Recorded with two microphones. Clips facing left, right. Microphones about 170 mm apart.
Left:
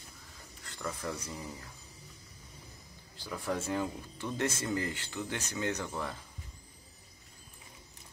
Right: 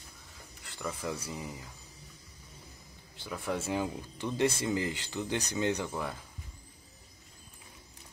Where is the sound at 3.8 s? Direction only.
15° right (ahead or behind).